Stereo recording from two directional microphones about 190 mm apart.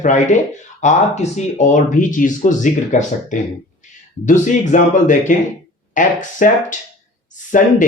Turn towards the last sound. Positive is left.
turn(degrees=45)  # may be behind; listen again after turning